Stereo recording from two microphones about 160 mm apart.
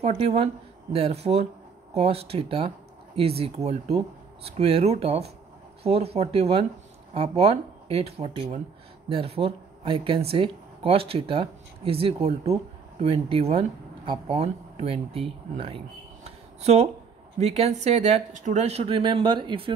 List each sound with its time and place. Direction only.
0.0 s speech: 45° right (ahead or behind)
16.3 s a sound: 40° right (ahead or behind)
17.4 s speech: 40° right (ahead or behind)